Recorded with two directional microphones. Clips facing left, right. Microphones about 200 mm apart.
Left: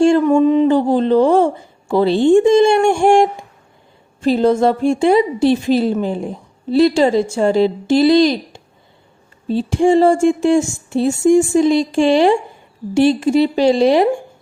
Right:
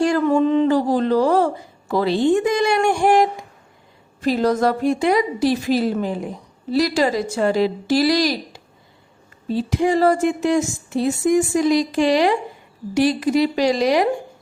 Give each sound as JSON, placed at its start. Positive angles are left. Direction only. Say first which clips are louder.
{"t": 0.3, "sound": "a woman's voice", "louder": "left 4 dB", "side_deg": 15}